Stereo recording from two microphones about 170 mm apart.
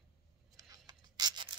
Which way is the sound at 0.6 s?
20° right (ahead or behind).